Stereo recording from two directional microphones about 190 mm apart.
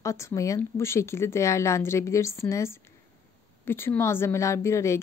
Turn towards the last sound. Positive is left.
turn(degrees=15)  # may be behind; listen again after turning